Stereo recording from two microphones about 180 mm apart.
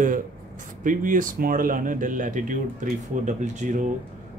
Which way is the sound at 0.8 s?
50° right (ahead or behind).